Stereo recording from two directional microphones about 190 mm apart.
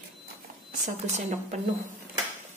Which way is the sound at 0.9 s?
40° right (ahead or behind).